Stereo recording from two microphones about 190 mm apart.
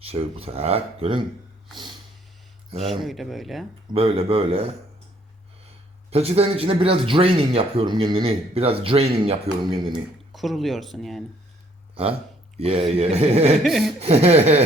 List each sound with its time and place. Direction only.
0.0 s speech: 30° right (ahead or behind)
2.7 s speech: 30° right (ahead or behind)
3.0 s speech: centre (ahead or behind)
3.9 s speech: 30° right (ahead or behind)
6.1 s speech: 30° right (ahead or behind)
10.3 s speech: centre (ahead or behind)
12.5 s speech: 30° right (ahead or behind)
13.6 s speech: centre (ahead or behind)
14.0 s speech: 30° right (ahead or behind)